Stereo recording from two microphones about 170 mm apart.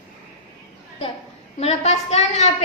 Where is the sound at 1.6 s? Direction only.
40° left (ahead or behind).